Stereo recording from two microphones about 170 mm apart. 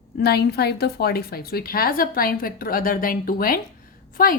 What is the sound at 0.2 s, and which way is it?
A woman's voice, 70° left (ahead or behind).